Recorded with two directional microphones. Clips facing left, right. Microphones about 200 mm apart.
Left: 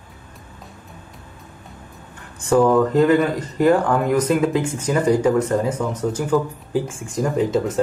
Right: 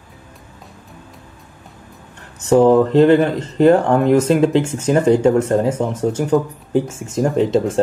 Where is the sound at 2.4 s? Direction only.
25° right (ahead or behind).